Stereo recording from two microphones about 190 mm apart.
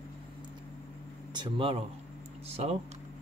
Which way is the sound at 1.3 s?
25° right (ahead or behind).